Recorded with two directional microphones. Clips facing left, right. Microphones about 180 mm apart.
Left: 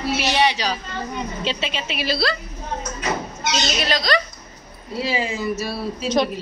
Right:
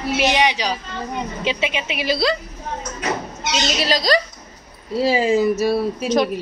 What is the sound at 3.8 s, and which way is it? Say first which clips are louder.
A woman's voice: right 5 dB; 35° right (ahead or behind).